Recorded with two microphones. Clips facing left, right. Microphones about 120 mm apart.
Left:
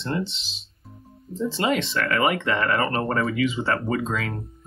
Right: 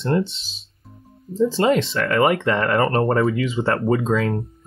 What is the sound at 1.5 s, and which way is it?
Speech, 30° right (ahead or behind).